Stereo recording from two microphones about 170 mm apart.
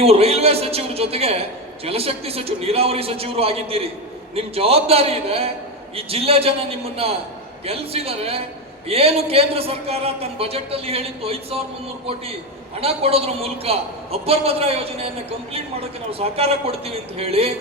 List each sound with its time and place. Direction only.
0.0 s a man's voice: 35° right (ahead or behind)
12.8 s a man's voice: 35° right (ahead or behind)